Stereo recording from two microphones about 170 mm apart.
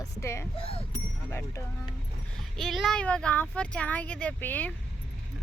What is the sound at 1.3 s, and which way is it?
Speech, 15° left (ahead or behind).